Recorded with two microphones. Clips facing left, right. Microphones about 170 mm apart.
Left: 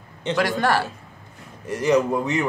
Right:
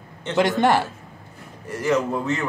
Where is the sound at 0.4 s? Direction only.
20° right (ahead or behind).